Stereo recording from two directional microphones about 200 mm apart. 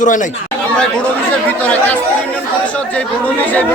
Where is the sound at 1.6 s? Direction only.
5° left (ahead or behind).